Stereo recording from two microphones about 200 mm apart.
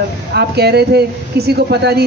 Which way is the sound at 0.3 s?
55° right (ahead or behind).